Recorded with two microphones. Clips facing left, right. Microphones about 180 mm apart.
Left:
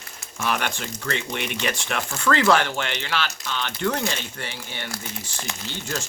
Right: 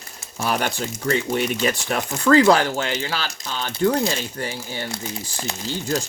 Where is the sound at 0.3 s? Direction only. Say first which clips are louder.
Right 3 dB; 35° right (ahead or behind).